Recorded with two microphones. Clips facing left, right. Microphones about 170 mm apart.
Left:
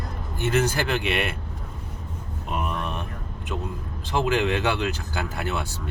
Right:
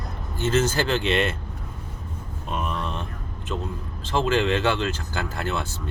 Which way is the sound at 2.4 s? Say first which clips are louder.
Even; 10° left (ahead or behind).